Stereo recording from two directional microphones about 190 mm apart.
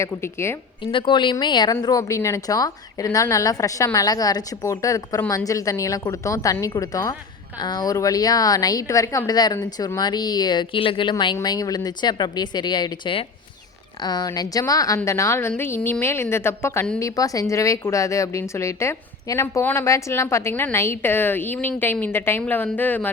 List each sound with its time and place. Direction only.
0.0 s speech: 15° left (ahead or behind)
0.9 s a woman's voice: 25° left (ahead or behind); by 23.1 s 10° left (ahead or behind)